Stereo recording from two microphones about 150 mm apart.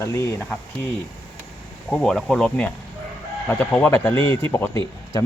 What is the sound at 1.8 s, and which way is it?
Speech, 5° left (ahead or behind).